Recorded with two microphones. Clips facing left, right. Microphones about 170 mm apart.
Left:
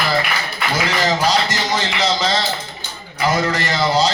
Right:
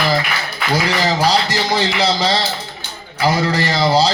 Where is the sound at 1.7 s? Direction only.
35° right (ahead or behind).